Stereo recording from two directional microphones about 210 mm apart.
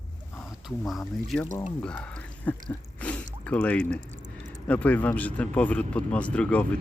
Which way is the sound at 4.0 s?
35° right (ahead or behind).